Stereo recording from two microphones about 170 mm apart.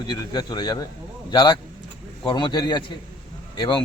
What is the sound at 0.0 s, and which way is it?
Speech, 25° left (ahead or behind).